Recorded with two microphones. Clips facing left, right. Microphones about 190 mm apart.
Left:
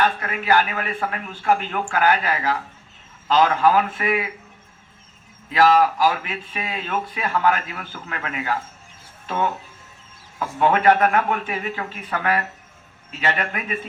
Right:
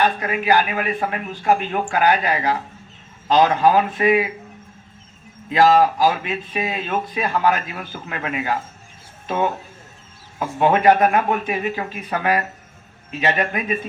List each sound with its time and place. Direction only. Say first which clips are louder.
0.0 s speech: right 3 dB; 20° right (ahead or behind)
5.5 s a man's voice: right 2 dB; 25° right (ahead or behind)